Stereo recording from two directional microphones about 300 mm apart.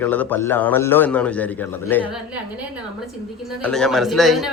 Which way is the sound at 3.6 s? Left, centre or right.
Centre.